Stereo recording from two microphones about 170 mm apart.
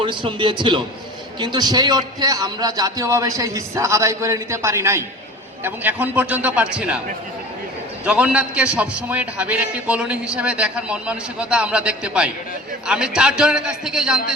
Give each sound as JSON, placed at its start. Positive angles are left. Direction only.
{"t": 0.0, "sound": "a man's voice", "side_deg": -30}
{"t": 8.0, "sound": "a man's voice", "side_deg": -5}